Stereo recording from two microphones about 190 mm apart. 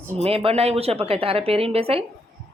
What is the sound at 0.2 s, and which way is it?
A woman's voice, 30° right (ahead or behind).